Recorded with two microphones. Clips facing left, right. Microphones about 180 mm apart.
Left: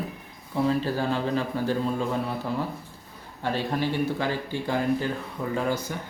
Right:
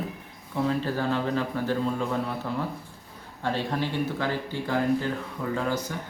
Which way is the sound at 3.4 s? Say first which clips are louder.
Left 1 dB; 10° left (ahead or behind).